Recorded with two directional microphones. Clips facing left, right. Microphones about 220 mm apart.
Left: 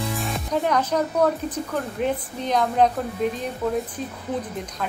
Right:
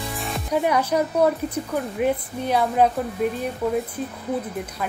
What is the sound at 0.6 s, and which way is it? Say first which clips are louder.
Speech: right 1 dB; 10° right (ahead or behind).